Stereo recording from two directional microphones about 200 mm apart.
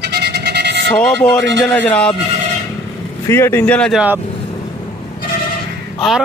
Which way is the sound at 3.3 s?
10° left (ahead or behind).